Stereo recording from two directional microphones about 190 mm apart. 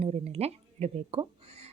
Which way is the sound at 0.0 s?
35° right (ahead or behind).